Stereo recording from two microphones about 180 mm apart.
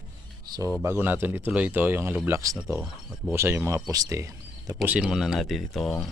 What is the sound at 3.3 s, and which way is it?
Speech, 15° right (ahead or behind).